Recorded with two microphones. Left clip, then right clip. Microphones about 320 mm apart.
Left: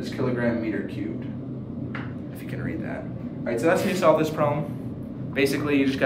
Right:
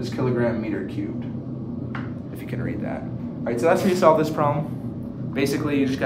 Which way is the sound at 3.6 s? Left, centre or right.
Centre.